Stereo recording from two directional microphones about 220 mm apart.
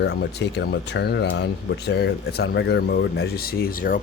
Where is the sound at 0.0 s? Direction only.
50° left (ahead or behind).